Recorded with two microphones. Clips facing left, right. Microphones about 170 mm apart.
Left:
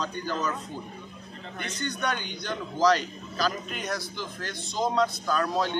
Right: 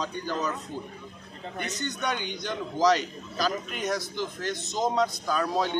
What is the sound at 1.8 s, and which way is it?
Speech, 15° right (ahead or behind).